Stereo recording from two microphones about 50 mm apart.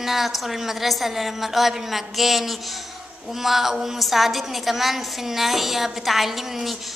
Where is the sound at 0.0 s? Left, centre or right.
Centre.